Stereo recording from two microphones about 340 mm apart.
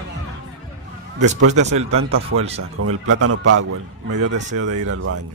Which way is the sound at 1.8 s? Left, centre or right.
Right.